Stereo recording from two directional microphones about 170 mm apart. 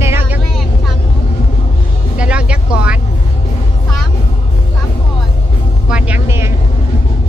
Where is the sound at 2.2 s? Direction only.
5° right (ahead or behind).